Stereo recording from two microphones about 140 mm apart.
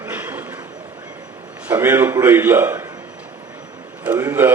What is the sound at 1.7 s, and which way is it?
A man's voice, 15° right (ahead or behind).